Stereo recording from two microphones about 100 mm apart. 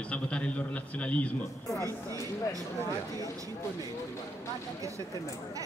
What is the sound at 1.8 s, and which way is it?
Speech, 35° right (ahead or behind).